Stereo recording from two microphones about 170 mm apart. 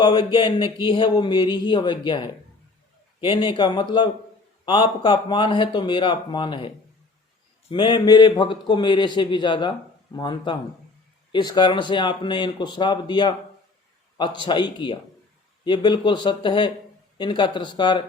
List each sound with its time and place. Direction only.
0.0 s a man's voice: 25° left (ahead or behind)
7.7 s a man's voice: 25° left (ahead or behind)